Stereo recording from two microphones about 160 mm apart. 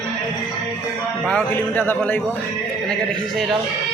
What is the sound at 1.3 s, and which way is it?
A man's voice, 10° left (ahead or behind).